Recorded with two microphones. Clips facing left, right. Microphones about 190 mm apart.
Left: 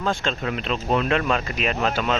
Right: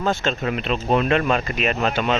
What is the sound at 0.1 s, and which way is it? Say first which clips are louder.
Speech: right 2 dB; 5° right (ahead or behind).